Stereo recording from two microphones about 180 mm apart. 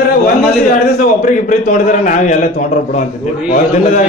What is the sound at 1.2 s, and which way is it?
A man's voice, 45° left (ahead or behind).